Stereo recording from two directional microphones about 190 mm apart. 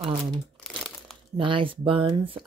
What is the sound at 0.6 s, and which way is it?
Crumpling, centre (ahead or behind).